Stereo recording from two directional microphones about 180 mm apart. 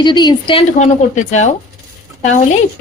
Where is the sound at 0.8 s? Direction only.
40° left (ahead or behind).